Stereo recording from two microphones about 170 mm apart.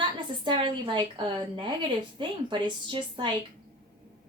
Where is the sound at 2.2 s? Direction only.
30° right (ahead or behind).